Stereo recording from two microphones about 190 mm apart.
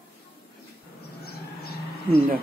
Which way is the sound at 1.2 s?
55° left (ahead or behind).